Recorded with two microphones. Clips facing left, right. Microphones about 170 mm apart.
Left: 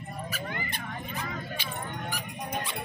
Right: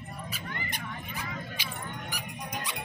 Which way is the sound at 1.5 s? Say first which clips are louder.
Left 3 dB; 10° right (ahead or behind).